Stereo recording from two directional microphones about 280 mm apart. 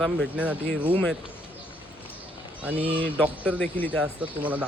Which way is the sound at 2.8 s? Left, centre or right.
Centre.